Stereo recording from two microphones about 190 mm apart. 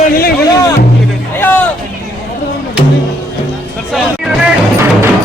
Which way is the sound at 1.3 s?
10° left (ahead or behind).